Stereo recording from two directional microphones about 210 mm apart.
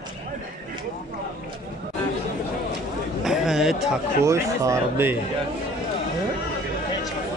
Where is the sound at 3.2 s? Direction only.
Centre (ahead or behind).